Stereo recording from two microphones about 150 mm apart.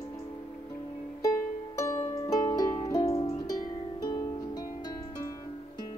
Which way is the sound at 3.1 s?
40° left (ahead or behind).